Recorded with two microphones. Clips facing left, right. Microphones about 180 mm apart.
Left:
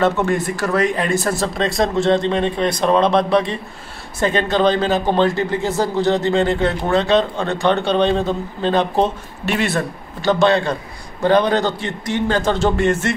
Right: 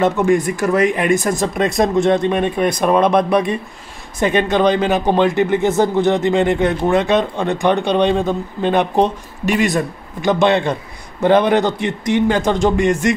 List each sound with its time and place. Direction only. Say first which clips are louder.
0.0 s a man's voice: right 3 dB; 15° right (ahead or behind)